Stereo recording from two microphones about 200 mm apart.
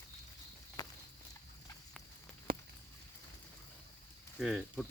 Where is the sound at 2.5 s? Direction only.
45° right (ahead or behind).